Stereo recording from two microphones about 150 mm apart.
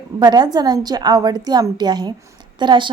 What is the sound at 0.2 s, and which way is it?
A woman's voice, 25° right (ahead or behind).